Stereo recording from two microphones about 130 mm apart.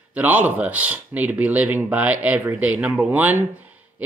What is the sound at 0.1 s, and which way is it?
Speech, 10° right (ahead or behind).